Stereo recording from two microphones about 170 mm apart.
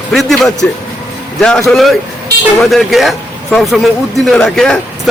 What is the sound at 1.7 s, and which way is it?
A man's voice, centre (ahead or behind).